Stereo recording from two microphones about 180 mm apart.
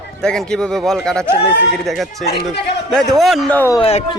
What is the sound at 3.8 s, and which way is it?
Speech, 35° left (ahead or behind).